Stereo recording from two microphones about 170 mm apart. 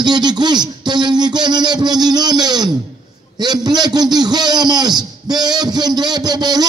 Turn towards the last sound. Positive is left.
turn(degrees=-25)  # may be behind; listen again after turning